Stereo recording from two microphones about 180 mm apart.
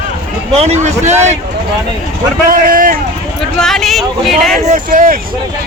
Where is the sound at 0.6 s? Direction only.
40° right (ahead or behind).